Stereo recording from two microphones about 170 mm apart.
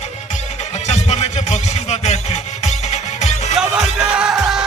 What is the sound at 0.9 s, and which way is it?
Music, 40° left (ahead or behind).